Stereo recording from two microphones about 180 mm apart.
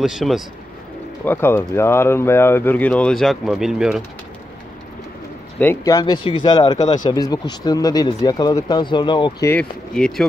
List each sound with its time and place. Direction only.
0.0 s speech: centre (ahead or behind)
1.2 s speech: 10° left (ahead or behind); by 4.0 s 5° right (ahead or behind)
5.6 s speech: 15° left (ahead or behind)
9.5 s speech: 5° left (ahead or behind)